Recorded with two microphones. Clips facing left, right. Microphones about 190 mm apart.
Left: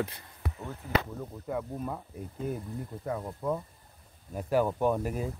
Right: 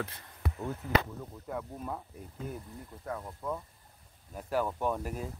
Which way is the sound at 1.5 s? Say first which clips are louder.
Left 4 dB; 5° left (ahead or behind).